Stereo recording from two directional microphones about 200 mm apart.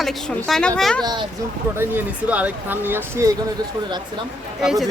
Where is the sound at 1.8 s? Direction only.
10° right (ahead or behind).